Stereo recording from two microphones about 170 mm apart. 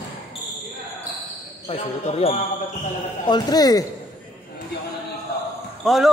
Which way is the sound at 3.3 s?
25° left (ahead or behind).